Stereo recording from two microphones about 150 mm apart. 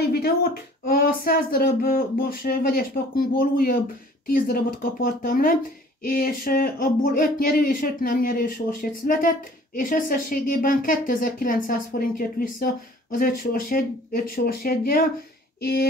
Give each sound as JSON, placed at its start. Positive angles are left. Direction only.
{"t": 0.0, "sound": "speech", "side_deg": 90}
{"t": 5.0, "sound": "speech", "side_deg": 70}
{"t": 15.6, "sound": "a sound", "side_deg": 90}